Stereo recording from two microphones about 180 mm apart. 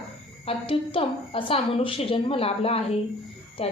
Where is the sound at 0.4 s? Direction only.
30° left (ahead or behind).